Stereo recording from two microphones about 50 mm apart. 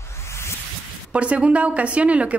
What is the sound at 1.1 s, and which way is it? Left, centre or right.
A woman's voice, right.